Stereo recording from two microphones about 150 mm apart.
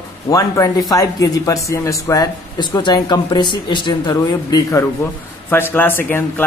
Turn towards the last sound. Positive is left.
turn(degrees=15)  # may be behind; listen again after turning